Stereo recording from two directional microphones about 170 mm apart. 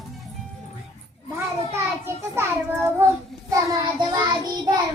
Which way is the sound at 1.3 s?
15° right (ahead or behind).